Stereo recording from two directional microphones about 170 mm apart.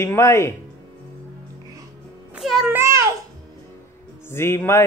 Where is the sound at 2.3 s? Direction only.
Centre (ahead or behind).